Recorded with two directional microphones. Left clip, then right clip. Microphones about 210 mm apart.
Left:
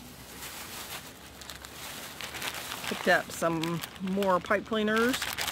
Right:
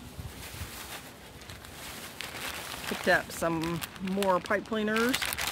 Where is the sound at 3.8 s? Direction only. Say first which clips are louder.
Even; 20° right (ahead or behind).